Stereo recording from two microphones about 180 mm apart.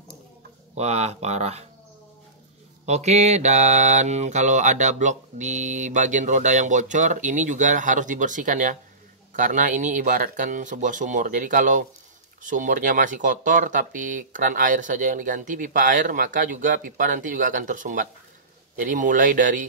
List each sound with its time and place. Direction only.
0.7 s speech: 40° right (ahead or behind)
2.8 s mantra: 40° right (ahead or behind)